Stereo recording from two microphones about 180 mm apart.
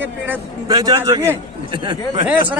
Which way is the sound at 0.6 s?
20° right (ahead or behind).